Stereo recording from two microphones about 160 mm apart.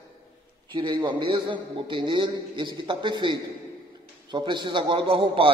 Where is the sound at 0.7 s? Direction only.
30° right (ahead or behind).